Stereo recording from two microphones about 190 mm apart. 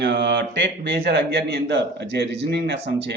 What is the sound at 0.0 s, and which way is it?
Mantra, 65° right (ahead or behind).